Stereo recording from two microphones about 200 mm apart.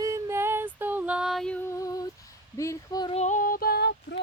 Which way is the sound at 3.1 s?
35° left (ahead or behind).